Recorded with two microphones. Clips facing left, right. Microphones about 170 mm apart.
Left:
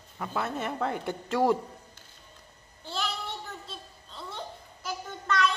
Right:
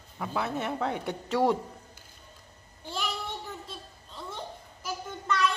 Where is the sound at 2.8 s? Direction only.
10° right (ahead or behind).